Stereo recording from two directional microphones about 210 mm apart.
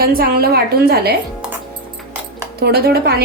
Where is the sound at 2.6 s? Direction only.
50° right (ahead or behind).